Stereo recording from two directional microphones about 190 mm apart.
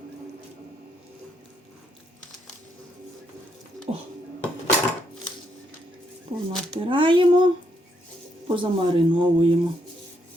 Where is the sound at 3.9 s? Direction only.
30° right (ahead or behind).